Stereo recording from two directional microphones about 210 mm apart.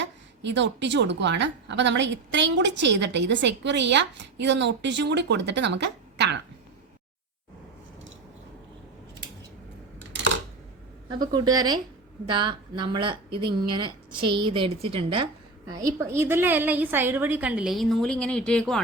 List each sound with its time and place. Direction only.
0.0 s a woman's voice: 60° right (ahead or behind)
10.1 s a sound: 60° right (ahead or behind)
11.1 s a woman's voice: 20° right (ahead or behind); by 18.8 s 5° left (ahead or behind)